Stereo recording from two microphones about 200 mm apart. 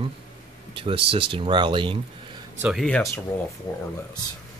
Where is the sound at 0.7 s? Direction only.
25° right (ahead or behind).